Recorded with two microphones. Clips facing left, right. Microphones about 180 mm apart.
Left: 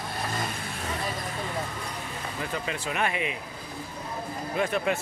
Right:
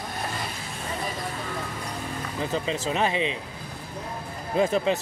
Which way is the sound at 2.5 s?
25° right (ahead or behind).